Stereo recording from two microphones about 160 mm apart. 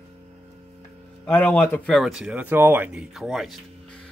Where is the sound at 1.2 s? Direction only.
10° left (ahead or behind).